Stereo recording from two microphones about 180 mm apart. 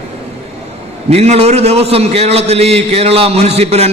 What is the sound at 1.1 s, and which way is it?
A man's voice, 35° right (ahead or behind).